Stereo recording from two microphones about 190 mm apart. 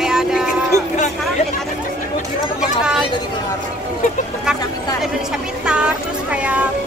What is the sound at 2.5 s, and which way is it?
Speech, 5° right (ahead or behind).